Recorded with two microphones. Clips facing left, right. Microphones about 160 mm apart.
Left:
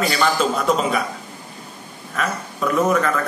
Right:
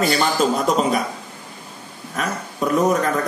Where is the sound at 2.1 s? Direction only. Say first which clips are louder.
Left 1 dB; 40° right (ahead or behind).